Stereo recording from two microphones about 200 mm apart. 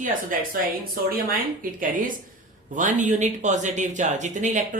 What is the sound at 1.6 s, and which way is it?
Speech, 45° right (ahead or behind).